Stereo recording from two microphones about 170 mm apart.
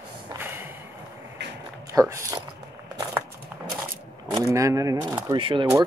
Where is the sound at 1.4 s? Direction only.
90° right.